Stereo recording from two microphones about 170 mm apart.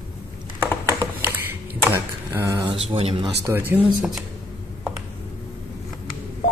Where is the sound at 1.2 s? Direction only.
10° right (ahead or behind).